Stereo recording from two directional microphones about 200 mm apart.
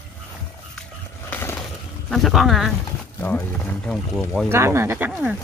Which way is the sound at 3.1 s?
10° left (ahead or behind).